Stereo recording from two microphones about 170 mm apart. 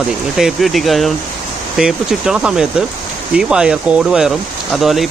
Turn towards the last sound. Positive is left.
turn(degrees=0)  # may be behind; listen again after turning